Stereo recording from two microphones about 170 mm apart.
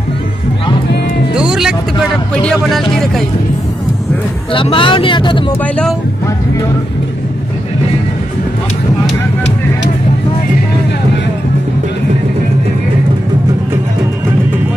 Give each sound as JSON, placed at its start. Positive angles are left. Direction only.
{"t": 1.3, "sound": "cat", "side_deg": -5}
{"t": 2.4, "sound": "speech", "side_deg": 0}
{"t": 4.5, "sound": "speech", "side_deg": 30}
{"t": 5.6, "sound": "speech", "side_deg": 5}